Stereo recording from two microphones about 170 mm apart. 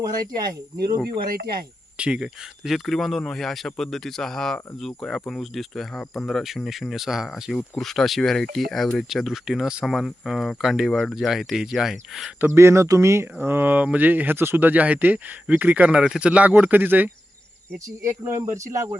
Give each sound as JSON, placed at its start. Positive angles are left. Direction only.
{"t": 0.0, "sound": "speech", "side_deg": -25}
{"t": 1.1, "sound": "speech", "side_deg": -65}
{"t": 2.0, "sound": "speech", "side_deg": -5}
{"t": 12.4, "sound": "speech", "side_deg": -15}